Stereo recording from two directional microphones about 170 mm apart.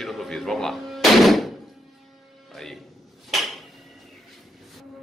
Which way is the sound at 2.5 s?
Centre (ahead or behind).